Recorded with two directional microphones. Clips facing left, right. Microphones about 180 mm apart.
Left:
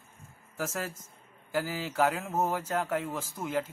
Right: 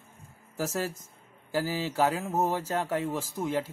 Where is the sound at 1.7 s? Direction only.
30° right (ahead or behind).